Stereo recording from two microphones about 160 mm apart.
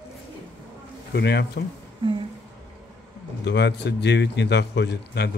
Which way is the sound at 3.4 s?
90° left.